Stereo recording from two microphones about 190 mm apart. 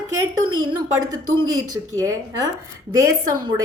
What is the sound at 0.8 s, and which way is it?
Speech, 20° right (ahead or behind).